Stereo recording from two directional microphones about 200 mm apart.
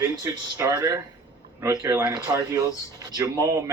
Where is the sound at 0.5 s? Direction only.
15° right (ahead or behind).